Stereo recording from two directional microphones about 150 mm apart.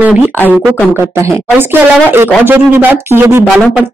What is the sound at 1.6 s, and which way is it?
Speech, 15° right (ahead or behind).